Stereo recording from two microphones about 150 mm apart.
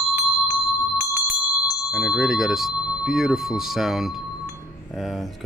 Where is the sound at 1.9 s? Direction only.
5° right (ahead or behind).